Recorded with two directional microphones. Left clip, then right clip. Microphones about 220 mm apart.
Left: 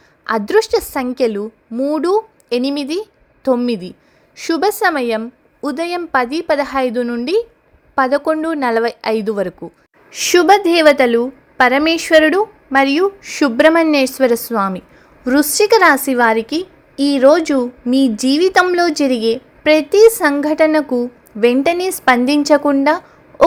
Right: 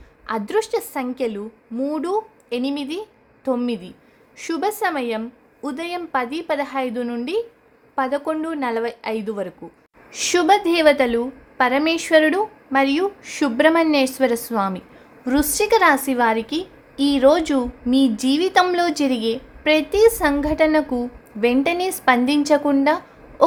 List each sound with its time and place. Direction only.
0.3 s a woman's voice: 25° left (ahead or behind)